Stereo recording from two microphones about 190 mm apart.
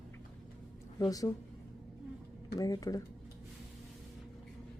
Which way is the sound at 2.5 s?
20° left (ahead or behind).